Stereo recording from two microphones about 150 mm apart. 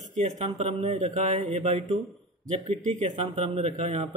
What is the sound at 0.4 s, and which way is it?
A man's voice, 40° right (ahead or behind).